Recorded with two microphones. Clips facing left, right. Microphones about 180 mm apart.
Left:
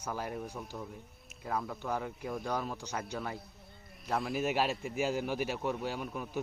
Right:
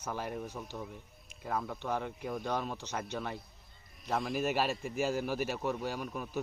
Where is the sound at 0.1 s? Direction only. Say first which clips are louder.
Even; 5° left (ahead or behind).